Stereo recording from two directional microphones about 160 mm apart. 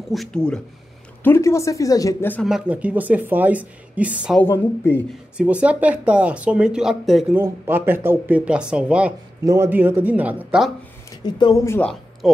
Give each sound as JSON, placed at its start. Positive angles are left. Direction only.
{"t": 0.1, "sound": "speech", "side_deg": 5}
{"t": 1.2, "sound": "speech", "side_deg": 15}
{"t": 2.4, "sound": "speech", "side_deg": -5}
{"t": 4.4, "sound": "speech", "side_deg": 15}
{"t": 5.4, "sound": "speech", "side_deg": -10}
{"t": 7.3, "sound": "speech", "side_deg": -15}
{"t": 9.4, "sound": "speech", "side_deg": -20}
{"t": 11.1, "sound": "speech", "side_deg": 25}
{"t": 11.6, "sound": "speech", "side_deg": 15}